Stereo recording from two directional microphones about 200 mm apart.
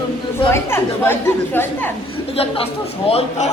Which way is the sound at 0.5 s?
10° left (ahead or behind).